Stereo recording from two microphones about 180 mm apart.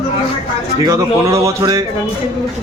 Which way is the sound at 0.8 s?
15° right (ahead or behind).